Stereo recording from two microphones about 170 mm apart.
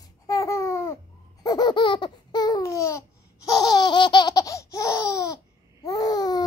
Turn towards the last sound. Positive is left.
turn(degrees=25)  # may be behind; listen again after turning